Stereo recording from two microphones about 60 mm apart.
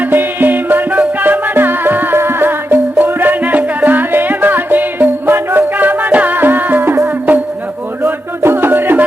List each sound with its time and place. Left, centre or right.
0.0 s music: right
8.4 s music: right